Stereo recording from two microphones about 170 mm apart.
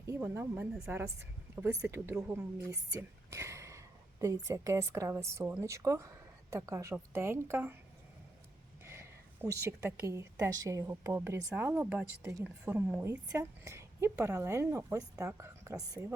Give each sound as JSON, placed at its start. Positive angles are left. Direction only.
{"t": 0.1, "sound": "a woman's voice", "side_deg": -15}
{"t": 8.9, "sound": "a woman's voice", "side_deg": -15}